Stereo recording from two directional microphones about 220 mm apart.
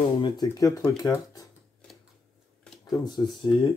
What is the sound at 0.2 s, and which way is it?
Speech, 15° left (ahead or behind).